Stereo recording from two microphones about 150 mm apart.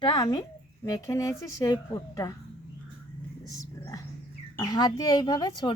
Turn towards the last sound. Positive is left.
turn(degrees=30)  # may be behind; listen again after turning